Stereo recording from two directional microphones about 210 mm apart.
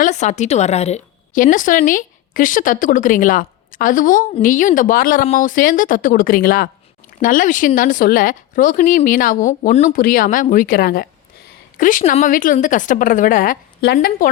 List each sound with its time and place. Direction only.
0.0 s a woman's voice: 35° left (ahead or behind)